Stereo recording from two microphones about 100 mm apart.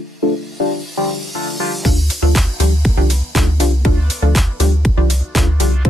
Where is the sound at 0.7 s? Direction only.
Centre (ahead or behind).